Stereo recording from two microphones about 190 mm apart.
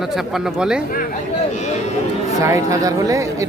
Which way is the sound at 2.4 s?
15° right (ahead or behind).